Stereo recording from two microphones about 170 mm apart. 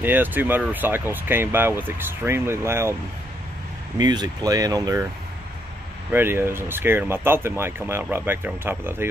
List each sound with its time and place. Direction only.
0.0 s speech: 10° right (ahead or behind)
4.0 s speech: 25° right (ahead or behind)
6.1 s speech: 15° right (ahead or behind)